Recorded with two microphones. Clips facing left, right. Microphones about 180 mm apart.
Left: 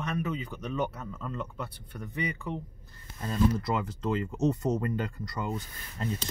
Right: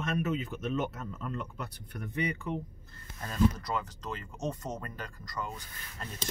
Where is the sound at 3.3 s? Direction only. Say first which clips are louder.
Left 2 dB; 25° left (ahead or behind).